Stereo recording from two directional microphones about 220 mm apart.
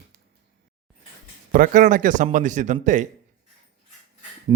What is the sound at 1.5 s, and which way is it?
A man's voice, 35° right (ahead or behind).